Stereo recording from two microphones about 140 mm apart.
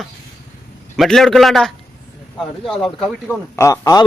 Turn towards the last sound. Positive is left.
turn(degrees=25)  # may be behind; listen again after turning